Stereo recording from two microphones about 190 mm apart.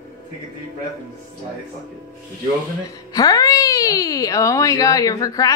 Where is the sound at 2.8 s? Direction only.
20° left (ahead or behind).